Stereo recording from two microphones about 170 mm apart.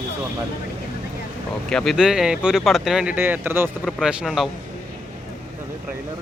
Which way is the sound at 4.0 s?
5° right (ahead or behind).